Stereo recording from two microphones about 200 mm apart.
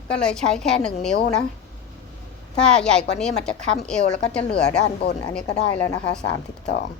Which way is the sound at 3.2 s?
5° left (ahead or behind).